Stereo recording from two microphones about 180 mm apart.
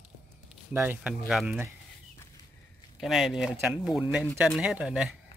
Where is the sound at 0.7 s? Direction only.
10° right (ahead or behind).